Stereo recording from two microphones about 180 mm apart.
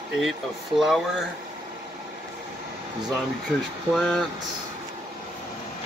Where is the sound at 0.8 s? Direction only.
Centre (ahead or behind).